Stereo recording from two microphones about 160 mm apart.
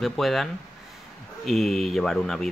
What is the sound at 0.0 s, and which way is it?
Speech, centre (ahead or behind).